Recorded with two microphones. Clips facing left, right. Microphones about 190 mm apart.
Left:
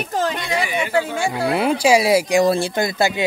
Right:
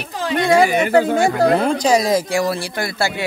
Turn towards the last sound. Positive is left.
turn(degrees=20)  # may be behind; listen again after turning